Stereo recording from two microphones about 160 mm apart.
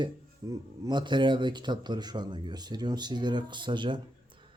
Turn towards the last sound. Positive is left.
turn(degrees=-30)  # may be behind; listen again after turning